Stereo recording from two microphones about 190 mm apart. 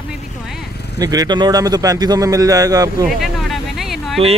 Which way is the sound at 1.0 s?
20° right (ahead or behind).